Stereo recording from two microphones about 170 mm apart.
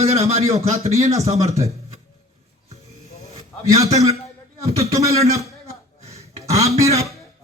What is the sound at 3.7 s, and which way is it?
Speech, 40° right (ahead or behind).